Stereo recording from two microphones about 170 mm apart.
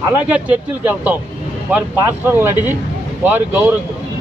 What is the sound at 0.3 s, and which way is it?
Speech, 10° right (ahead or behind).